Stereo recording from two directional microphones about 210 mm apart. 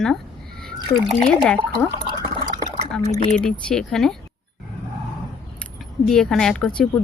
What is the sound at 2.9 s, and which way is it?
Speech, 5° left (ahead or behind).